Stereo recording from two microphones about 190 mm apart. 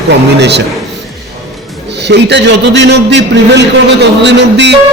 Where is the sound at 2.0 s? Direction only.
65° right (ahead or behind).